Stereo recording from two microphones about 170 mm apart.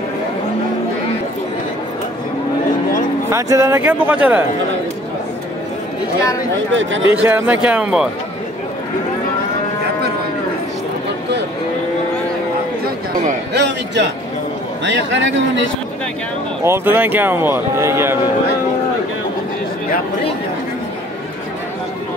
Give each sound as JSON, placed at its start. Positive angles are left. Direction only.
{"t": 3.3, "sound": "speech", "side_deg": -15}
{"t": 6.7, "sound": "a man's voice", "side_deg": -90}
{"t": 7.1, "sound": "speech", "side_deg": -10}
{"t": 13.5, "sound": "a sound", "side_deg": -85}
{"t": 14.9, "sound": "a man's voice", "side_deg": -90}
{"t": 16.6, "sound": "speech", "side_deg": -15}